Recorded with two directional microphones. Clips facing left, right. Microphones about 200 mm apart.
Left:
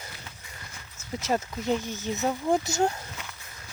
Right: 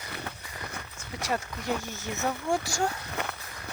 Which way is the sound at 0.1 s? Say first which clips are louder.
Right 7 dB; 65° right (ahead or behind).